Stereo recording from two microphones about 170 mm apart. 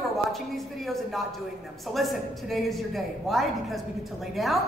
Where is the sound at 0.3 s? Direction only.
Centre (ahead or behind).